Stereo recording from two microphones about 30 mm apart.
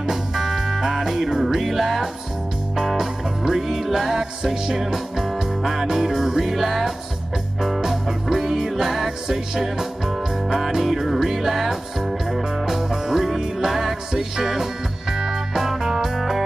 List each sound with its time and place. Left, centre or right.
0.0 s music: centre
0.7 s music: centre
1.7 s music: centre